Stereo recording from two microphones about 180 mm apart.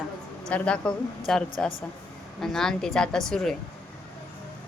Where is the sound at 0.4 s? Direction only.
5° left (ahead or behind).